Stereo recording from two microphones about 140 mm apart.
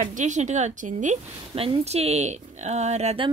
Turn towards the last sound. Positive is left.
turn(degrees=-50)  # may be behind; listen again after turning